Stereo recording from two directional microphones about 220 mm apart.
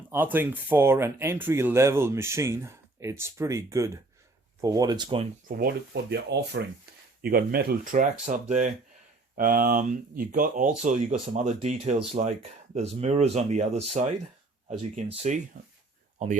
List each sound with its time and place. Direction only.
0.1 s speech: 10° right (ahead or behind); by 5.3 s 25° right (ahead or behind)
5.5 s speech: 45° right (ahead or behind)